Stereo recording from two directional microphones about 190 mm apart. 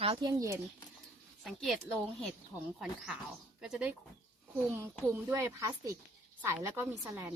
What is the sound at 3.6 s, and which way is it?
Speech, 5° right (ahead or behind).